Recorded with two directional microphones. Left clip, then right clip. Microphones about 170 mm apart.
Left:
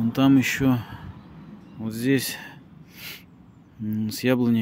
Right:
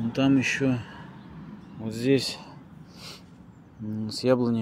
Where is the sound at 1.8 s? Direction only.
30° left (ahead or behind); by 3.2 s 50° left (ahead or behind).